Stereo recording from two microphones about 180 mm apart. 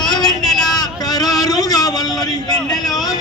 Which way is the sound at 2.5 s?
20° left (ahead or behind).